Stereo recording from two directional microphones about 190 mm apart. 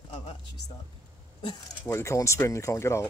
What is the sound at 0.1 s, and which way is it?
Speech, 30° left (ahead or behind).